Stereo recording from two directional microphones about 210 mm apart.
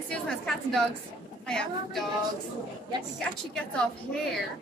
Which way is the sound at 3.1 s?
5° left (ahead or behind).